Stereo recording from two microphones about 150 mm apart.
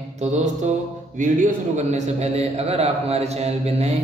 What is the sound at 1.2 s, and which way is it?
A man's voice, 60° right (ahead or behind).